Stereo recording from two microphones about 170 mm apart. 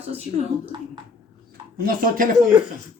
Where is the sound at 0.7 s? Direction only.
30° right (ahead or behind).